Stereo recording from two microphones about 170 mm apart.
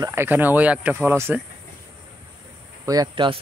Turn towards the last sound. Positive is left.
turn(degrees=-30)  # may be behind; listen again after turning